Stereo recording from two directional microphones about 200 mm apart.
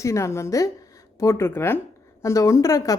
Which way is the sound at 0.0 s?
15° left (ahead or behind).